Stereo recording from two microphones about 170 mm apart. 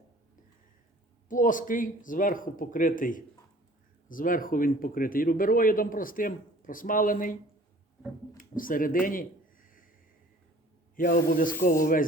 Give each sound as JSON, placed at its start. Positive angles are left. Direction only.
{"t": 1.3, "sound": "speech", "side_deg": 50}
{"t": 8.4, "sound": "a sound", "side_deg": 55}
{"t": 10.9, "sound": "speech", "side_deg": 55}